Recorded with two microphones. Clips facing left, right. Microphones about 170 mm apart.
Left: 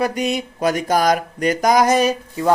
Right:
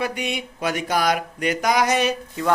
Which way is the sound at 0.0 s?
40° left (ahead or behind).